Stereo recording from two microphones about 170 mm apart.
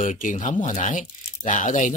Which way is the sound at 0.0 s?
50° left (ahead or behind).